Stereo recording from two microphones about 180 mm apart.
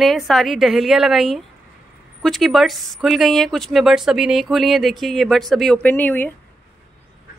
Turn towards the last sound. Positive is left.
turn(degrees=10)  # may be behind; listen again after turning